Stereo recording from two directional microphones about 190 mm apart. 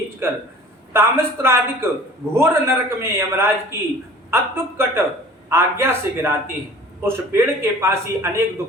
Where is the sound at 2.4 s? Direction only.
15° right (ahead or behind).